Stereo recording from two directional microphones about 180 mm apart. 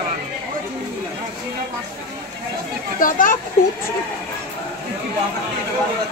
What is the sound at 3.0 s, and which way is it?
Speech, 50° left (ahead or behind).